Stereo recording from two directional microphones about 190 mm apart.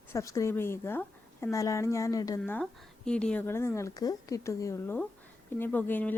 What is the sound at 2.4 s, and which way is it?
Speech, 5° left (ahead or behind).